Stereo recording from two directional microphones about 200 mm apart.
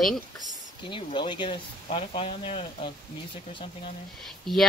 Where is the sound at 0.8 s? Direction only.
25° left (ahead or behind).